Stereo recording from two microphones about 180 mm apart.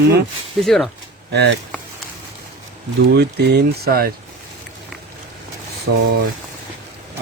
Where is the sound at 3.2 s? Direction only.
65° right (ahead or behind).